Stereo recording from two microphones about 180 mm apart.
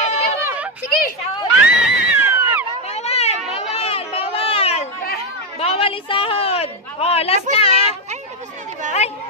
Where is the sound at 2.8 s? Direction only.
35° left (ahead or behind).